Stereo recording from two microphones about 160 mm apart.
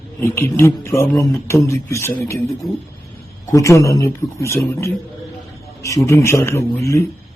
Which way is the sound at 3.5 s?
20° left (ahead or behind).